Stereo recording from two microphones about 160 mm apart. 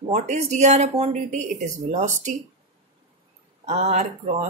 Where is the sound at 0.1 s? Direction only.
45° right (ahead or behind).